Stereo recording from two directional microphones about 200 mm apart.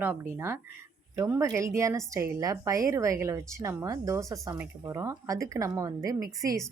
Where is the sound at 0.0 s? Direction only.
10° right (ahead or behind).